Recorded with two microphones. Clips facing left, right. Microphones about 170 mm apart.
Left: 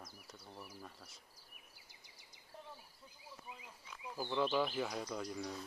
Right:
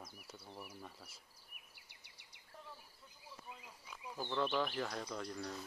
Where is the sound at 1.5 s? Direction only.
65° right (ahead or behind).